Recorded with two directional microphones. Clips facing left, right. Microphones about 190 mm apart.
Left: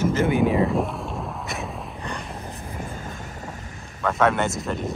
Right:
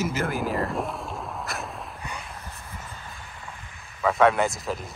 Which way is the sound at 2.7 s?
50° left (ahead or behind).